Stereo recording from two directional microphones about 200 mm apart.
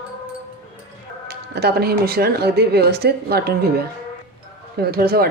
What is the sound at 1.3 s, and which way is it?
Speech, 55° right (ahead or behind).